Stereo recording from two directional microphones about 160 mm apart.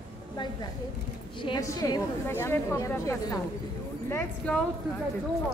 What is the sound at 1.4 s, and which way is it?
Speech, 25° left (ahead or behind).